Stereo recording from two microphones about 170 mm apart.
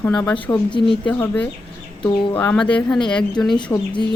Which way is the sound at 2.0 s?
25° left (ahead or behind).